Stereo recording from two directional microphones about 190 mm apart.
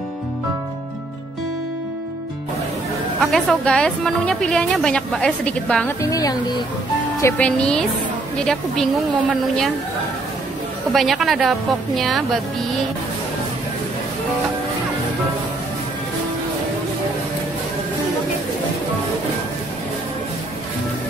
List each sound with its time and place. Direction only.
3.2 s a woman's voice: centre (ahead or behind)
5.9 s a woman's voice: 20° left (ahead or behind)
10.9 s a woman's voice: centre (ahead or behind)